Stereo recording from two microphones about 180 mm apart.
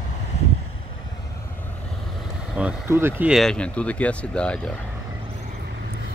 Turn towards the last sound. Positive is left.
turn(degrees=5)  # may be behind; listen again after turning